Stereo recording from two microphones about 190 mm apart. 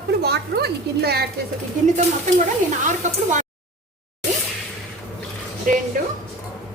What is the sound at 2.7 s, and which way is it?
Speech, 40° right (ahead or behind).